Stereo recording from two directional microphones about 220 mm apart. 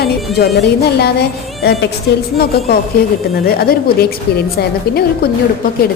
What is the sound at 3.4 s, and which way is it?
Speech, 45° left (ahead or behind).